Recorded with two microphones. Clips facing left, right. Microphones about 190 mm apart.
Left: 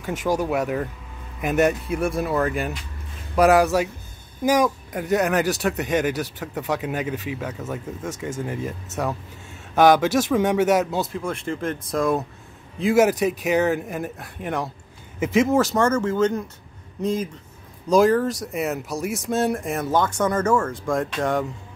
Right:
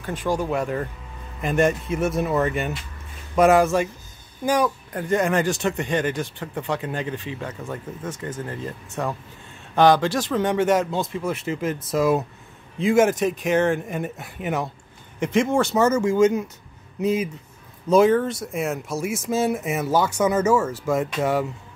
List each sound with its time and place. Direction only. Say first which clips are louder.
0.0 s speech: left 1 dB; 10° left (ahead or behind)
9.8 s speech: left 1 dB; 10° left (ahead or behind); by 21.5 s 5° right (ahead or behind)